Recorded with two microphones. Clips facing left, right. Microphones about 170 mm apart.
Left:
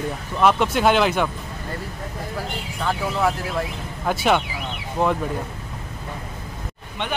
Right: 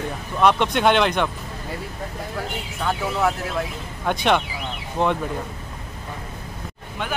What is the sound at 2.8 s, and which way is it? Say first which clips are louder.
Speech: even; centre (ahead or behind).